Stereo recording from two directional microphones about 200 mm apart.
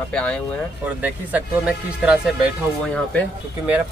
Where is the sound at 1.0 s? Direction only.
10° right (ahead or behind).